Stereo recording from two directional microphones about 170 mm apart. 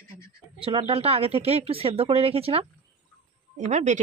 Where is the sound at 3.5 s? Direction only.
45° right (ahead or behind).